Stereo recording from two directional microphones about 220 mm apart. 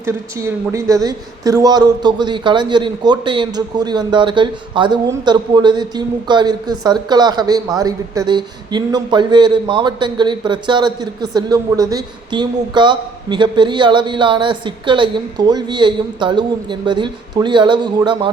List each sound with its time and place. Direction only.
0.0 s a man's voice: 15° right (ahead or behind)